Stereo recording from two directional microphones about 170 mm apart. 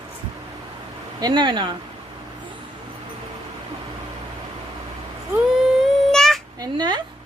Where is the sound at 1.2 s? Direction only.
25° right (ahead or behind).